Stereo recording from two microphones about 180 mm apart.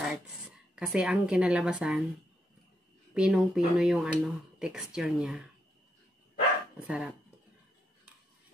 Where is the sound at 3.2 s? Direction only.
Centre (ahead or behind).